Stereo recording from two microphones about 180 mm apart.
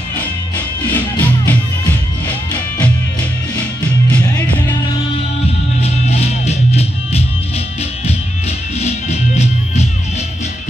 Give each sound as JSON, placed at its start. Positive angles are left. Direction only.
{"t": 0.9, "sound": "music", "side_deg": 10}
{"t": 5.8, "sound": "music", "side_deg": 35}
{"t": 8.7, "sound": "music", "side_deg": 35}